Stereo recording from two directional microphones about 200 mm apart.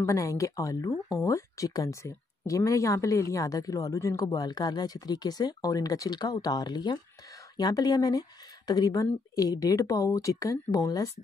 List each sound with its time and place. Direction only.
0.0 s speech: 15° left (ahead or behind)